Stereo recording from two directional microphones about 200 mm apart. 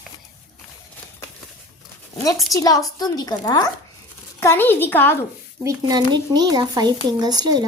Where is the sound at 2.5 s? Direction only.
15° left (ahead or behind).